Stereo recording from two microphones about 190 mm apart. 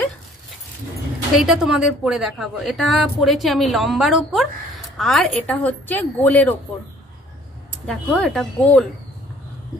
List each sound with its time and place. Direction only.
1.3 s a woman's voice: centre (ahead or behind)
7.8 s a woman's voice: 5° left (ahead or behind)